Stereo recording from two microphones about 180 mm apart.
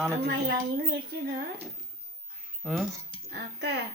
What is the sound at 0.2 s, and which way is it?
Chink, 70° right (ahead or behind).